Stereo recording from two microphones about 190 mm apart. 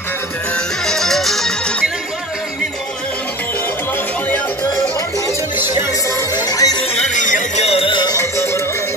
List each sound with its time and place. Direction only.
0.8 s music: centre (ahead or behind)
6.0 s music: 20° left (ahead or behind)
6.8 s music: 40° left (ahead or behind); by 8.3 s 20° left (ahead or behind)